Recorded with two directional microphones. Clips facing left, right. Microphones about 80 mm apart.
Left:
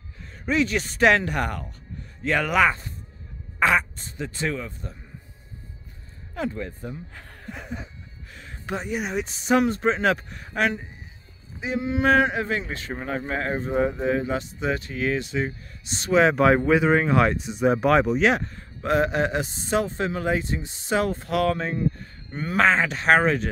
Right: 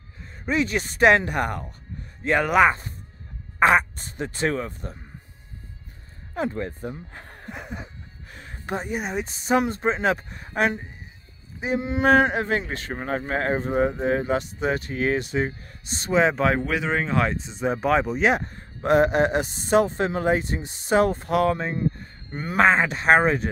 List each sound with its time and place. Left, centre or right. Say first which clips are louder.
0.5 s speech: left 1 dB; centre
0.8 s speech: right 4 dB; centre
3.9 s speech: right 2 dB; right
6.3 s speech: right 2 dB; right
7.5 s speech: even; centre
8.3 s speech: right 1 dB; right
9.5 s speech: left 1 dB; right
9.8 s speech: left 1 dB; centre
10.4 s speech: right 2 dB; right
11.6 s speech: right 1 dB; right
16.1 s speech: left 2 dB; centre
16.6 s speech: left 6 dB; centre
18.6 s a man's voice: right 4 dB; right
22.3 s speech: right 1 dB; centre